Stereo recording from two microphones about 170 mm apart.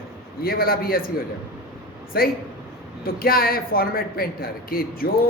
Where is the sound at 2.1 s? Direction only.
60° left (ahead or behind).